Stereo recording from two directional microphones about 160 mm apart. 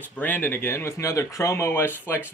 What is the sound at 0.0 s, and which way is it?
Speech, 10° left (ahead or behind).